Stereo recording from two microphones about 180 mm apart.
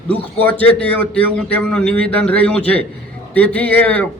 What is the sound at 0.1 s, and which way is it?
A man's voice, 10° left (ahead or behind).